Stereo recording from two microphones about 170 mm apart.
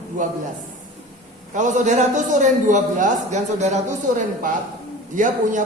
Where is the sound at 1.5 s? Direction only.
45° right (ahead or behind).